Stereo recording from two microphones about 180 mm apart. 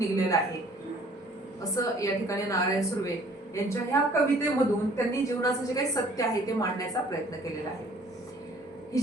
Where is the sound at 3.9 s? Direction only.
15° left (ahead or behind).